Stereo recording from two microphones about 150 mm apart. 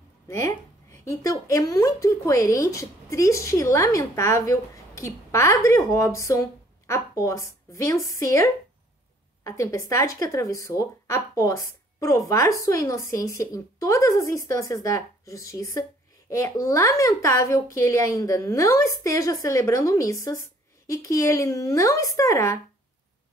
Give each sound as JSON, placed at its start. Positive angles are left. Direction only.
{"t": 0.3, "sound": "speech", "side_deg": 20}